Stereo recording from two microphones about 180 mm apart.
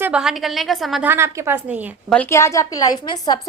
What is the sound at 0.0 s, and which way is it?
A woman's voice, 5° right (ahead or behind).